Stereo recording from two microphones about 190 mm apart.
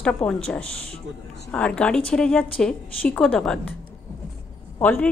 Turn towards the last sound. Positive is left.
turn(degrees=10)  # may be behind; listen again after turning